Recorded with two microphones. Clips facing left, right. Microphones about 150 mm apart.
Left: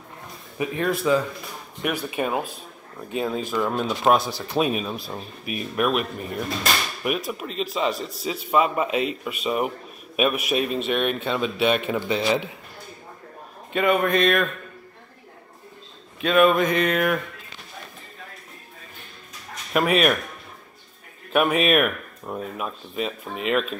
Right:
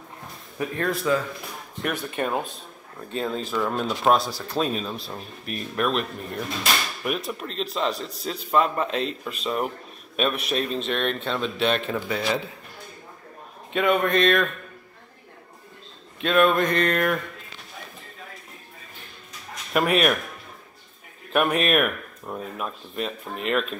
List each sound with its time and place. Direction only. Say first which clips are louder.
0.6 s speech: left 2 dB; 5° left (ahead or behind)
4.6 s speech: left 3 dB; 10° left (ahead or behind)
13.7 s speech: left 1 dB; centre (ahead or behind)
16.2 s speech: left 2 dB; centre (ahead or behind)
19.7 s speech: left 1 dB; centre (ahead or behind)
21.3 s speech: left 2 dB; centre (ahead or behind)